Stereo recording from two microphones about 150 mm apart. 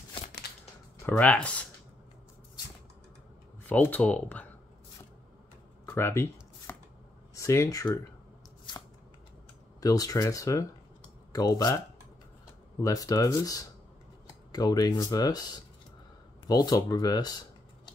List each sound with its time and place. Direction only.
1.0 s speech: 10° left (ahead or behind)
3.6 s speech: 10° left (ahead or behind)
5.9 s speech: 15° left (ahead or behind)
6.7 s shuffling cards: 15° left (ahead or behind)
7.3 s speech: 20° left (ahead or behind)
9.8 s speech: 25° left (ahead or behind)
12.8 s speech: 25° left (ahead or behind)